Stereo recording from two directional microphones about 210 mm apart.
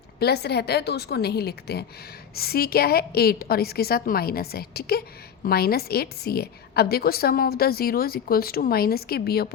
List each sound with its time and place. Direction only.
0.2 s a woman's voice: 50° left (ahead or behind)